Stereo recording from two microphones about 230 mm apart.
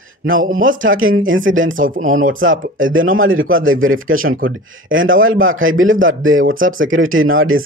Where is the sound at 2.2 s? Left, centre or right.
Right.